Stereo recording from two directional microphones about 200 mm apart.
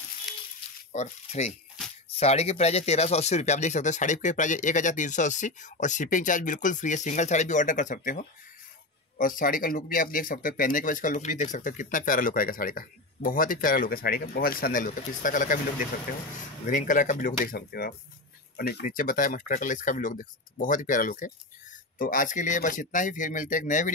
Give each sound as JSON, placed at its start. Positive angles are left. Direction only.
{"t": 0.9, "sound": "speech", "side_deg": 35}